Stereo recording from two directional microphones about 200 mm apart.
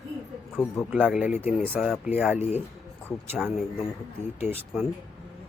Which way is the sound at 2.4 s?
35° left (ahead or behind).